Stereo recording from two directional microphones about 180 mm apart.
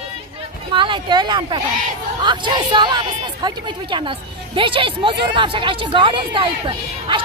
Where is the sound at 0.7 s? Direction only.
25° right (ahead or behind).